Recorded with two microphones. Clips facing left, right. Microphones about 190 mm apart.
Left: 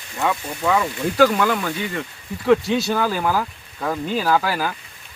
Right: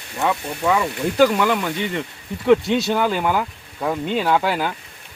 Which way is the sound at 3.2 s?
15° right (ahead or behind).